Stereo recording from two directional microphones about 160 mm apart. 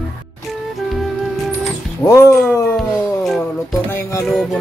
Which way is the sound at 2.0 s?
20° left (ahead or behind).